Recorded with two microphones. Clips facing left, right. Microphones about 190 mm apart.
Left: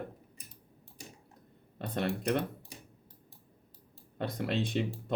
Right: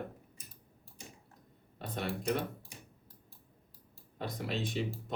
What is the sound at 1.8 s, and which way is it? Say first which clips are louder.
Speech: left 4 dB; 60° left (ahead or behind).